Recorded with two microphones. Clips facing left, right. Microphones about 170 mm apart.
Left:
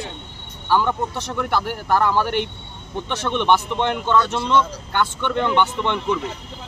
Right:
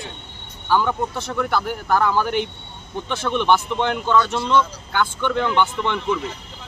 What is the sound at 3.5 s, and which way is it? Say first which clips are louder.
Speech: left 1 dB; 5° right (ahead or behind).